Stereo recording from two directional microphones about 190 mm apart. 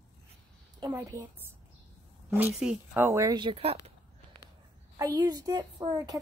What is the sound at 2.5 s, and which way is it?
Speech, 10° right (ahead or behind).